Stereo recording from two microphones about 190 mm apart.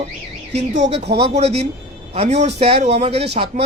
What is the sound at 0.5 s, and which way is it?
Speech, 35° right (ahead or behind).